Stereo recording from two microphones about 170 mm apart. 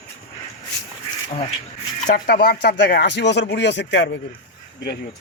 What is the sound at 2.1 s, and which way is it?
Speech, 60° left (ahead or behind).